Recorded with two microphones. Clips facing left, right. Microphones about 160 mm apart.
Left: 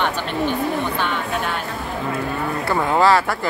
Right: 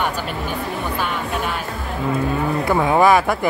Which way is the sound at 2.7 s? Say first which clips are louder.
Right 2 dB; 15° right (ahead or behind).